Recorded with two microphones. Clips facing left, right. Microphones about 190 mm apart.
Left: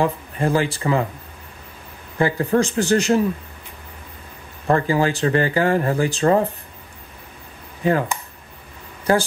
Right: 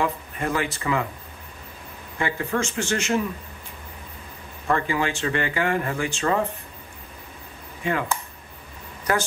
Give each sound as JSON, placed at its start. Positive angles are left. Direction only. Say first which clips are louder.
{"t": 0.0, "sound": "speech", "louder": "left 5 dB", "side_deg": 30}
{"t": 2.1, "sound": "speech", "louder": "left 7 dB", "side_deg": 35}
{"t": 4.6, "sound": "speech", "louder": "left 6 dB", "side_deg": 35}
{"t": 7.8, "sound": "speech", "louder": "left 7 dB", "side_deg": 35}
{"t": 9.1, "sound": "speech", "louder": "left 6 dB", "side_deg": 30}